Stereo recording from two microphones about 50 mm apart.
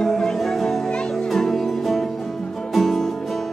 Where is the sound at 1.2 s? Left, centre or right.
Centre.